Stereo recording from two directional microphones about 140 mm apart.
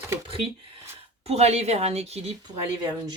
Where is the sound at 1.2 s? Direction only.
50° right (ahead or behind).